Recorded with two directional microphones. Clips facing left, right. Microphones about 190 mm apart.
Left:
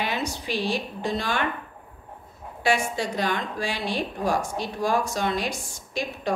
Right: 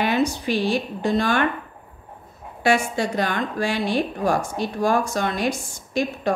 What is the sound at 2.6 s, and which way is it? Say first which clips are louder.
A woman's voice: right 4 dB; 50° right (ahead or behind).